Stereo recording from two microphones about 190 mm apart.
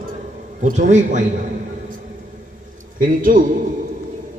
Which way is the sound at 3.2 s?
45° right (ahead or behind).